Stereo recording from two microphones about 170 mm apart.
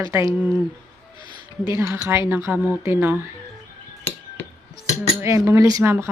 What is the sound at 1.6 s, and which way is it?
Speech, 15° right (ahead or behind).